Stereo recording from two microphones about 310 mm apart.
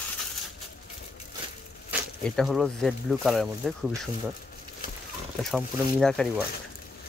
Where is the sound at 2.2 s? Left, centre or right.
Centre.